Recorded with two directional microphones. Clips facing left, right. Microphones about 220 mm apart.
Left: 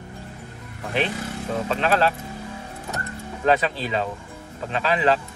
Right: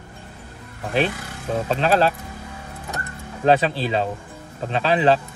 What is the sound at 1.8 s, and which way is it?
Speech, 35° right (ahead or behind).